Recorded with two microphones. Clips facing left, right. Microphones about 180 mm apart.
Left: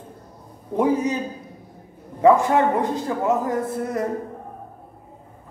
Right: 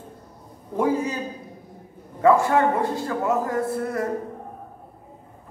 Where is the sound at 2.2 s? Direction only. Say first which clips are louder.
Left 2 dB; 20° left (ahead or behind).